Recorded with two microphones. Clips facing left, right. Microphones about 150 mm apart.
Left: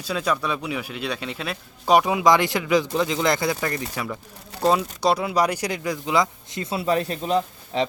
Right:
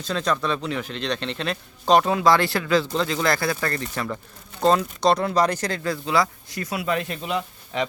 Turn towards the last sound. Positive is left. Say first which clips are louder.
# left 3 dB
turn(degrees=35)  # may be behind; listen again after turning